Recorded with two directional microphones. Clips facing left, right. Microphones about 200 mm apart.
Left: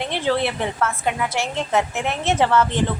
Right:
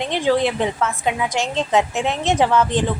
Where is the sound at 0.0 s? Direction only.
15° right (ahead or behind).